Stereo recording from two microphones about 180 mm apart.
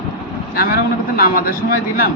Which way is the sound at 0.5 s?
55° left (ahead or behind).